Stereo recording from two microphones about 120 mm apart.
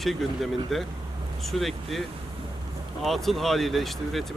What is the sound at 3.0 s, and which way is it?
Speech, centre (ahead or behind).